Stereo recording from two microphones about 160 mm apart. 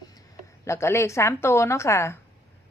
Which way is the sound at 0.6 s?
15° left (ahead or behind).